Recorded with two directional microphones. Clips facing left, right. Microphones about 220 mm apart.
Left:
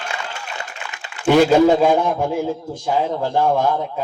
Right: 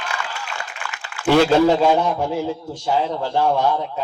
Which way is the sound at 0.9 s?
15° left (ahead or behind).